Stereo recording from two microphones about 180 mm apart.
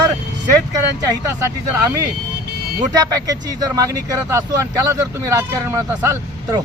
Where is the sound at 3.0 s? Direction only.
20° right (ahead or behind).